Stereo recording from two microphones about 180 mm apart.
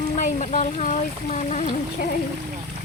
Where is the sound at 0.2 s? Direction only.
45° left (ahead or behind).